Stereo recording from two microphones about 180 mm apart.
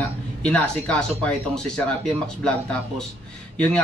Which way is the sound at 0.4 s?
5° left (ahead or behind).